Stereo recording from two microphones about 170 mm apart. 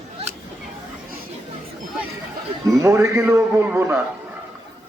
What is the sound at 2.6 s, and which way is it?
A man's voice, 20° right (ahead or behind).